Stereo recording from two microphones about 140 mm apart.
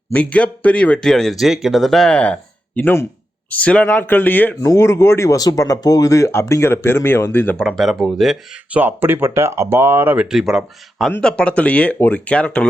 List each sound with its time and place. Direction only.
0.1 s speech: 10° left (ahead or behind)
7.6 s speech: centre (ahead or behind)
8.8 s speech: 15° right (ahead or behind); by 12.6 s 10° left (ahead or behind)